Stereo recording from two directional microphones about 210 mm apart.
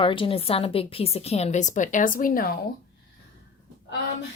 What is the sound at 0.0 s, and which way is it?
Speech, 25° left (ahead or behind).